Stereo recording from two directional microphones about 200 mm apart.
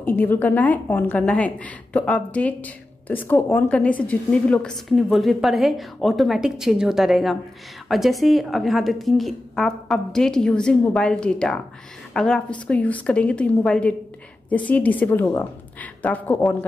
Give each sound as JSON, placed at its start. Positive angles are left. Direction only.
{"t": 0.0, "sound": "a woman's voice", "side_deg": 10}